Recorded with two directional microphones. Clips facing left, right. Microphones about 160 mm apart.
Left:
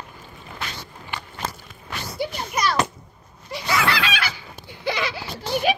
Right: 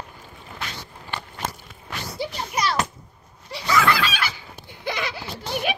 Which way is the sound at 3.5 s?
40° right (ahead or behind).